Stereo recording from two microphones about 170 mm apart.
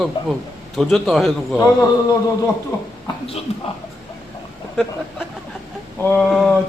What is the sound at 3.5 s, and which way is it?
Speech, 40° left (ahead or behind).